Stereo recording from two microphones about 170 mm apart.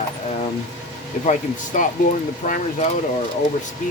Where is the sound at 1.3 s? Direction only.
50° left (ahead or behind).